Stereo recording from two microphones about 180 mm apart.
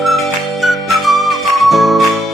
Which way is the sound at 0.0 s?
Centre (ahead or behind).